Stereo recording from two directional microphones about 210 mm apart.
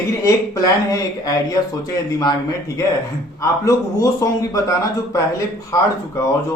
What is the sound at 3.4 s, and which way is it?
A man's voice, 15° left (ahead or behind).